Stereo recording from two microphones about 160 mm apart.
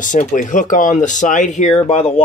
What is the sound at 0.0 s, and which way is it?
Speech, 50° left (ahead or behind).